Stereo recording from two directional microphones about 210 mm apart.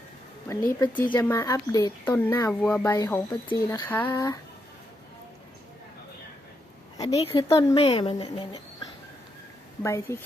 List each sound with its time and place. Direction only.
0.4 s speech: 10° left (ahead or behind)
6.9 s a sound: 15° left (ahead or behind)
7.3 s speech: 15° left (ahead or behind)
7.5 s speech: 30° left (ahead or behind)
9.8 s speech: 10° left (ahead or behind)